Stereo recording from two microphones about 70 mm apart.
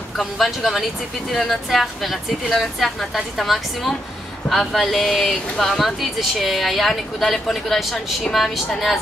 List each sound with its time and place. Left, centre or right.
0.2 s speech: centre